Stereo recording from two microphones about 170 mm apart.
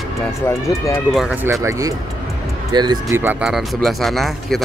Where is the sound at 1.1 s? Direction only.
10° right (ahead or behind).